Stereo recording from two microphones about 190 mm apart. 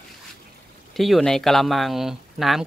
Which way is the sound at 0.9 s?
Centre (ahead or behind).